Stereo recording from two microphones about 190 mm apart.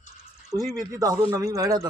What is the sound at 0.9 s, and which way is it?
A man's voice, 15° right (ahead or behind).